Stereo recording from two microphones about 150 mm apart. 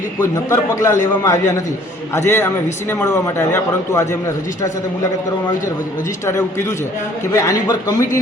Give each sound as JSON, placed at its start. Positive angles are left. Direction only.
{"t": 0.2, "sound": "a man's voice", "side_deg": 20}
{"t": 6.2, "sound": "a man's voice", "side_deg": 15}